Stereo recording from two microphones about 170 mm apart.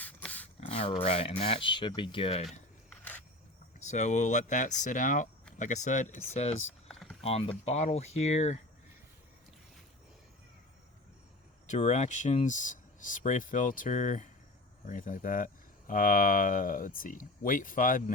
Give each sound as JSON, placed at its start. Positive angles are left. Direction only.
{"t": 0.0, "sound": "a sound", "side_deg": 10}
{"t": 0.6, "sound": "a sound", "side_deg": 35}
{"t": 1.0, "sound": "speech", "side_deg": 35}
{"t": 2.5, "sound": "single-lens reflex camera", "side_deg": 10}
{"t": 3.8, "sound": "speech", "side_deg": 45}
{"t": 6.8, "sound": "typing", "side_deg": 0}
{"t": 7.2, "sound": "speech", "side_deg": 35}
{"t": 11.6, "sound": "speech", "side_deg": 45}